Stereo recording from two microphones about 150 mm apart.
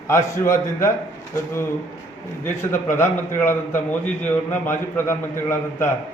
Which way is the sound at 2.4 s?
15° left (ahead or behind).